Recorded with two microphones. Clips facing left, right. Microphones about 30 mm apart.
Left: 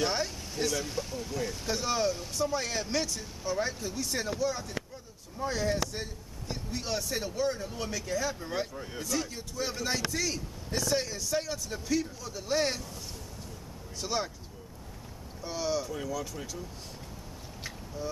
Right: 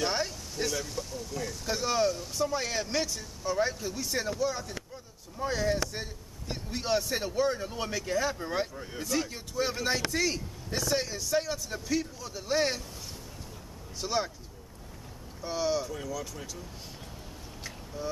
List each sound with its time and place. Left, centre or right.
0.0 s vehicle: centre
0.8 s speech: centre
1.7 s a man's voice: centre
6.5 s a man's voice: centre
14.0 s a man's voice: centre
15.4 s a man's voice: centre
15.9 s speech: centre